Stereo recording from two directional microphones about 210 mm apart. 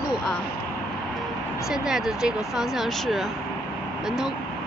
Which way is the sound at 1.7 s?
5° right (ahead or behind).